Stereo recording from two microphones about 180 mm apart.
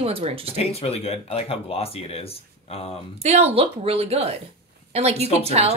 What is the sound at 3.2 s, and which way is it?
A woman's voice, 35° right (ahead or behind).